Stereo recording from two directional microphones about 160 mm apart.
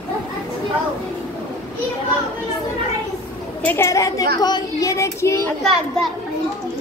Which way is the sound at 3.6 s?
15° left (ahead or behind).